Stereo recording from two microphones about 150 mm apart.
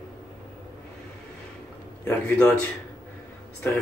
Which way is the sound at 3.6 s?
15° left (ahead or behind).